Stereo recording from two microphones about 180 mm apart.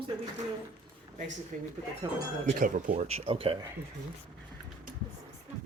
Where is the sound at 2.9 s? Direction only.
35° right (ahead or behind).